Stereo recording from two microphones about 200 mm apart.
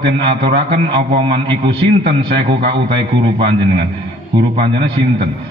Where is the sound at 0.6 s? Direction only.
25° right (ahead or behind).